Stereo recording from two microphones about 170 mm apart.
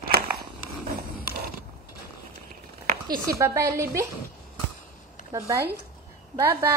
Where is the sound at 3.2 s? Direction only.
20° right (ahead or behind).